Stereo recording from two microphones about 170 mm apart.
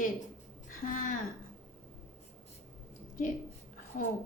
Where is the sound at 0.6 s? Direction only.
50° left (ahead or behind).